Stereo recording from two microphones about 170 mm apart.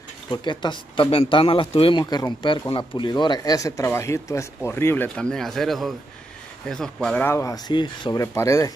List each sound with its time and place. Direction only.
0.3 s a man's voice: 25° left (ahead or behind)